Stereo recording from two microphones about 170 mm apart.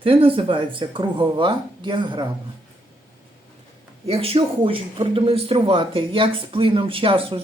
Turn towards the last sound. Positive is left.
turn(degrees=-30)  # may be behind; listen again after turning